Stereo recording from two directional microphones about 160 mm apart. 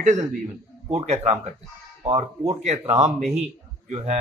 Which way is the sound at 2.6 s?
45° right (ahead or behind).